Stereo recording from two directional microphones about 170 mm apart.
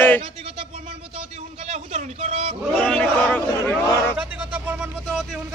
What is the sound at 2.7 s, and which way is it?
A woman's voice, 5° left (ahead or behind).